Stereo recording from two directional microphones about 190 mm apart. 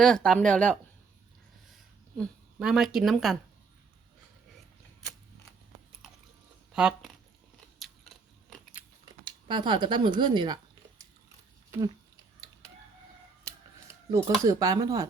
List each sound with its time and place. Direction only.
0.0 s speech: centre (ahead or behind)
1.7 s a sound: centre (ahead or behind)
6.7 s speech: 5° right (ahead or behind)
7.8 s a sound: centre (ahead or behind)
8.4 s biting: centre (ahead or behind)
9.2 s speech: 25° right (ahead or behind)
14.1 s speech: 15° right (ahead or behind)